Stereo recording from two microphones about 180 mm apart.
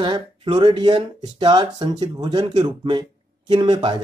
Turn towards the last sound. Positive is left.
turn(degrees=-25)  # may be behind; listen again after turning